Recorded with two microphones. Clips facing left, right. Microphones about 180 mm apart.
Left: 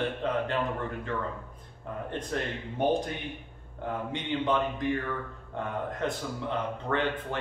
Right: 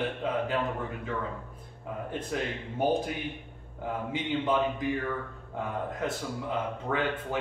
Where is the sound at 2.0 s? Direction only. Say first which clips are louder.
Even; 5° right (ahead or behind).